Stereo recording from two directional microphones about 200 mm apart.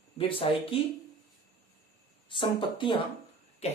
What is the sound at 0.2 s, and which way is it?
Speech, 25° left (ahead or behind).